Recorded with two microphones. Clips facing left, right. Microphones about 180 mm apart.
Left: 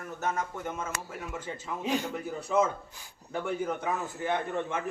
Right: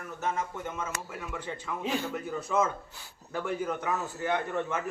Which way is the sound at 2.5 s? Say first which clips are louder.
Left 2 dB; 25° left (ahead or behind).